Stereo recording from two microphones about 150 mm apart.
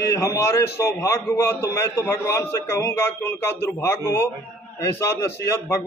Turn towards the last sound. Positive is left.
turn(degrees=20)  # may be behind; listen again after turning